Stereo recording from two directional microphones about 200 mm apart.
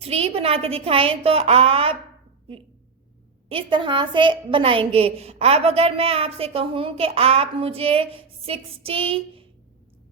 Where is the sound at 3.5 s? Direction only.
25° right (ahead or behind).